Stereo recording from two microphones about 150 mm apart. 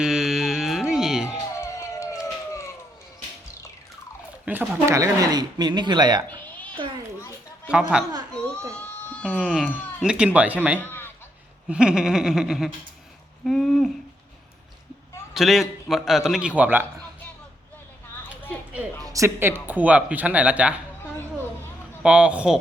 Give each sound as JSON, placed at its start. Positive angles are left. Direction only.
{"t": 0.0, "sound": "music", "side_deg": -5}
{"t": 1.6, "sound": "police car", "side_deg": 20}
{"t": 4.4, "sound": "speech", "side_deg": -15}
{"t": 7.7, "sound": "a man's voice", "side_deg": -5}
{"t": 8.3, "sound": "a sound", "side_deg": 5}
{"t": 9.5, "sound": "a man's voice", "side_deg": 0}
{"t": 10.8, "sound": "a sound", "side_deg": 15}
{"t": 11.7, "sound": "a man's voice", "side_deg": -5}
{"t": 15.3, "sound": "a man's voice", "side_deg": 0}
{"t": 19.0, "sound": "speech", "side_deg": -20}
{"t": 22.0, "sound": "speech", "side_deg": -5}